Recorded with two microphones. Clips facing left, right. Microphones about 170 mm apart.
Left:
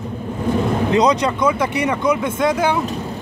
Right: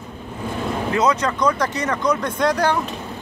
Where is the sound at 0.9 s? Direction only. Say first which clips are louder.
Left 2 dB; 15° left (ahead or behind).